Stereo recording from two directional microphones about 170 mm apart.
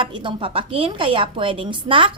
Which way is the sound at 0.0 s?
30° right (ahead or behind).